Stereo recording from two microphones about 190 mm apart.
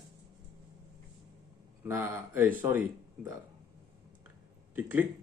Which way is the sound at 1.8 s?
10° right (ahead or behind).